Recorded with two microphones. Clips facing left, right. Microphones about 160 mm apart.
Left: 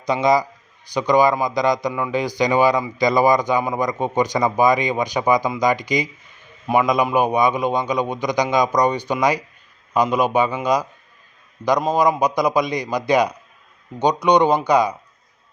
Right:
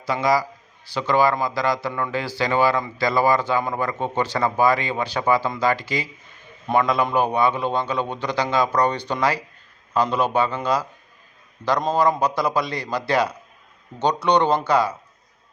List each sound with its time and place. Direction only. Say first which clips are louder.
0.0 s a man's voice: left 3 dB; 20° left (ahead or behind)